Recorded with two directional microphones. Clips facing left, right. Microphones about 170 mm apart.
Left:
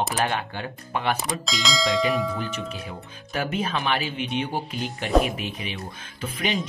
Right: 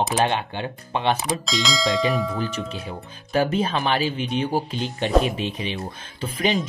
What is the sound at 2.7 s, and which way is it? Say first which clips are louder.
Speech: right 3 dB; 30° right (ahead or behind).